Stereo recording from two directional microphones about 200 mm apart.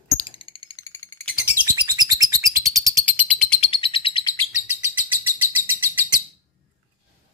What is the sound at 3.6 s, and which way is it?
Bird, 25° left (ahead or behind).